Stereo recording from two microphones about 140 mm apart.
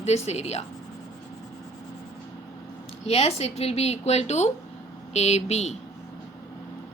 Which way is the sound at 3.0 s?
45° left (ahead or behind).